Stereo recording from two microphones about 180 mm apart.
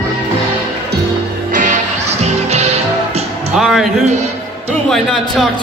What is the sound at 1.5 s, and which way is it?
Music, 45° right (ahead or behind).